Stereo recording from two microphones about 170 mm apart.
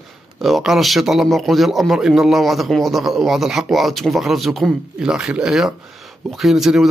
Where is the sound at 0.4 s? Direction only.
Centre (ahead or behind).